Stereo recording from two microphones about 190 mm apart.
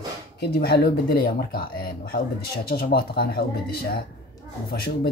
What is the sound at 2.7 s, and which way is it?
Speech, 55° left (ahead or behind).